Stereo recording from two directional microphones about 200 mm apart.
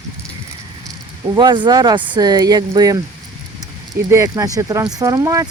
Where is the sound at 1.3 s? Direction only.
20° right (ahead or behind).